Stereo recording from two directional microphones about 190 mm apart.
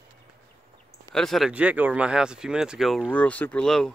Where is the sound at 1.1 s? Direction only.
Centre (ahead or behind).